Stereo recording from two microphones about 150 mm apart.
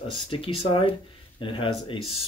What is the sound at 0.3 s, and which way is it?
Speech, 35° left (ahead or behind).